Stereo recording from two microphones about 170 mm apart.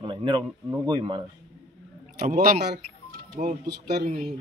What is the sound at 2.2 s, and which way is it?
Speech, 55° right (ahead or behind).